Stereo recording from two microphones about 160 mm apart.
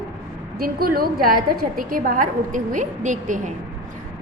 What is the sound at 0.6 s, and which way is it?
A woman's voice, 70° right (ahead or behind).